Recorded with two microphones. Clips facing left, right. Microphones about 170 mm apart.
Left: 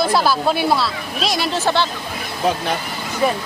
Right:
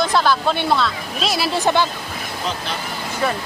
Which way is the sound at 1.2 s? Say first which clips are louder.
Right 1 dB; 5° right (ahead or behind).